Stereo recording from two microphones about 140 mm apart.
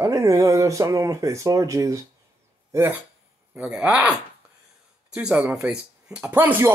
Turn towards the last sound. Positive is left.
turn(degrees=-15)  # may be behind; listen again after turning